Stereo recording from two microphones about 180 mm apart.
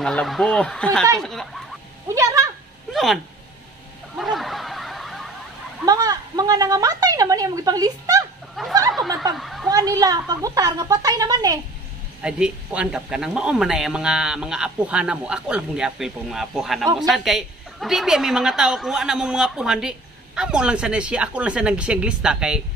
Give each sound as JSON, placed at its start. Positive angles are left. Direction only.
{"t": 0.0, "sound": "a woman's voice", "side_deg": 0}
{"t": 2.1, "sound": "speech", "side_deg": -15}
{"t": 2.9, "sound": "a sound", "side_deg": 0}
{"t": 4.2, "sound": "snicker", "side_deg": 0}
{"t": 5.9, "sound": "a woman's voice", "side_deg": -20}
{"t": 8.6, "sound": "a woman's voice", "side_deg": 0}
{"t": 8.9, "sound": "snicker", "side_deg": 0}
{"t": 9.3, "sound": "a woman's voice", "side_deg": 0}
{"t": 9.7, "sound": "a woman's voice", "side_deg": -20}
{"t": 12.2, "sound": "a woman's voice", "side_deg": -5}